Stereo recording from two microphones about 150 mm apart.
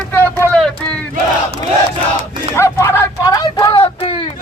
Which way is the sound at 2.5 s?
20° left (ahead or behind).